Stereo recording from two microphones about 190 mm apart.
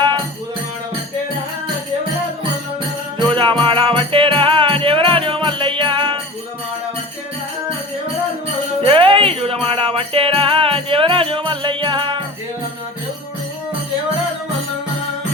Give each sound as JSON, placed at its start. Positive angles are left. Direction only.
{"t": 3.2, "sound": "music", "side_deg": -25}
{"t": 8.8, "sound": "music", "side_deg": -25}